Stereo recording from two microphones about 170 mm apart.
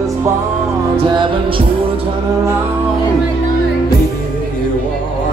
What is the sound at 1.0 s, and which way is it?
Music, 30° right (ahead or behind).